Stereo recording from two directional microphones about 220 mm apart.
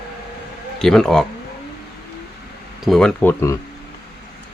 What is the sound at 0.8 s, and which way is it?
Speech, centre (ahead or behind).